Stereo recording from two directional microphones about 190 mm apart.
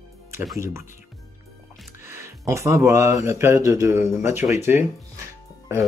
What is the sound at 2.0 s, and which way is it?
Speech, 15° right (ahead or behind).